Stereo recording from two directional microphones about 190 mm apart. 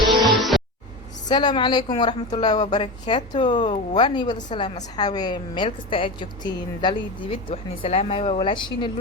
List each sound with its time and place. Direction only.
0.0 s music: centre (ahead or behind)
1.3 s a woman's voice: 25° left (ahead or behind)